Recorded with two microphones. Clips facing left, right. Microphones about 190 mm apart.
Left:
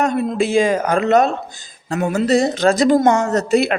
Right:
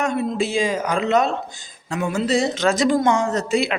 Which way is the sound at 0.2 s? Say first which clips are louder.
Left 5 dB; 55° left (ahead or behind).